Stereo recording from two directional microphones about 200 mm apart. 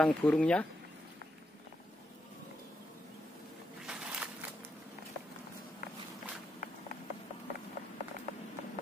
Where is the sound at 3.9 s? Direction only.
5° right (ahead or behind).